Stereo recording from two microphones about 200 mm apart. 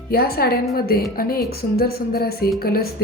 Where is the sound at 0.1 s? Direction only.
50° left (ahead or behind).